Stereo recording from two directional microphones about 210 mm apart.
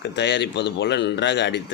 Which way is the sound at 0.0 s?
55° left (ahead or behind).